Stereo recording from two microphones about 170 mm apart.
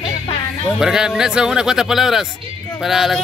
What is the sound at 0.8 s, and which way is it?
Speech, 5° right (ahead or behind).